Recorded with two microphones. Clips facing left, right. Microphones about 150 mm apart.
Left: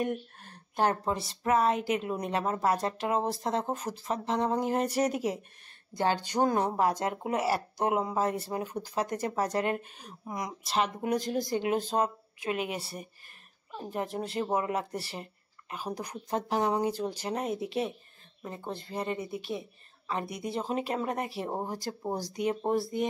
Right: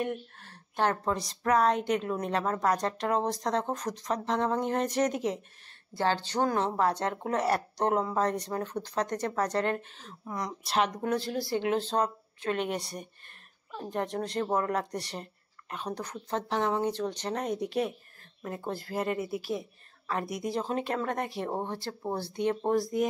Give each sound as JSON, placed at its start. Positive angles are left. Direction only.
{"t": 0.0, "sound": "a woman's voice", "side_deg": 45}
{"t": 0.7, "sound": "a woman's voice", "side_deg": 10}
{"t": 10.6, "sound": "a woman's voice", "side_deg": 0}
{"t": 11.0, "sound": "a woman's voice", "side_deg": 15}